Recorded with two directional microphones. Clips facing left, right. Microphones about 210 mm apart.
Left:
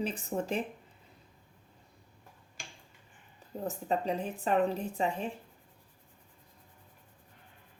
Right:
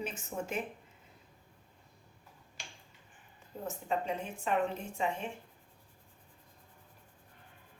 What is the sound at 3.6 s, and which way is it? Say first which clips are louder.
Speech: left 3 dB; 35° left (ahead or behind).